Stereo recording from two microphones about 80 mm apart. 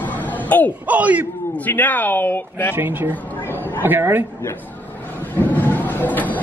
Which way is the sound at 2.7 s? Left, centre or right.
Right.